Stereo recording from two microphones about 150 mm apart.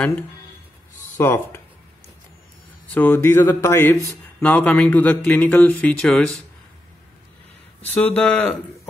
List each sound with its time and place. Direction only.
1.1 s speech: 15° left (ahead or behind)
2.9 s speech: 10° left (ahead or behind)
7.9 s speech: 5° left (ahead or behind)